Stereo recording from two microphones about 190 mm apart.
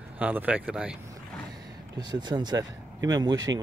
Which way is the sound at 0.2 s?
10° right (ahead or behind).